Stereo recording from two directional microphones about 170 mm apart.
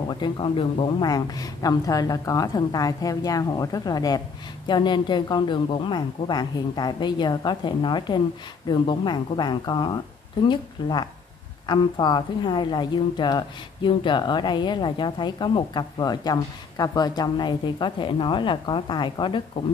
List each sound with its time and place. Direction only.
0.1 s speech: 30° left (ahead or behind)